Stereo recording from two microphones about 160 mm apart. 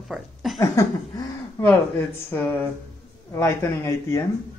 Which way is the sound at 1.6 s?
10° left (ahead or behind).